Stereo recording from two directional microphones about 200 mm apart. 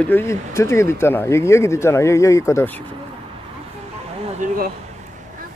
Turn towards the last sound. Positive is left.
turn(degrees=-40)  # may be behind; listen again after turning